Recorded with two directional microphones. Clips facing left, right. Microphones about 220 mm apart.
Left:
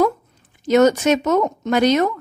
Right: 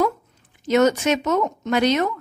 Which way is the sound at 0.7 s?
40° left (ahead or behind).